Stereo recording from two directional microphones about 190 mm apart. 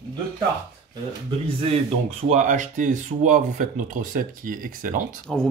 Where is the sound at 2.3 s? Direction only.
40° right (ahead or behind).